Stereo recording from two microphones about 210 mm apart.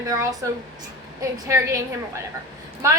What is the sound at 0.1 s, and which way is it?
Speech, 15° right (ahead or behind).